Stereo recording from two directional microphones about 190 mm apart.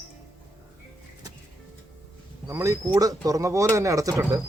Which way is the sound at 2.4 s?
15° right (ahead or behind).